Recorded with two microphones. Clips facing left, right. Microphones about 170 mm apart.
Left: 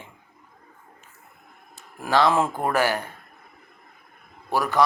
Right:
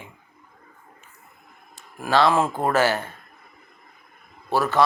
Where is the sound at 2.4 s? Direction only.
20° right (ahead or behind).